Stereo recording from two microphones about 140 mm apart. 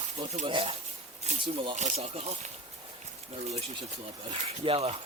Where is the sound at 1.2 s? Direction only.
50° right (ahead or behind).